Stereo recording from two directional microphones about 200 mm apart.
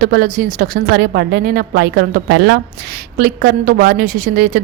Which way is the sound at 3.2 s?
50° right (ahead or behind).